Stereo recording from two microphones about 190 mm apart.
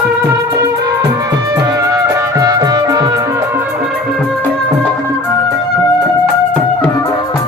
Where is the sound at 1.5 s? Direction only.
20° right (ahead or behind).